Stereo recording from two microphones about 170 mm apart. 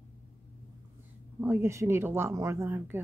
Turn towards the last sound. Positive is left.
turn(degrees=-10)  # may be behind; listen again after turning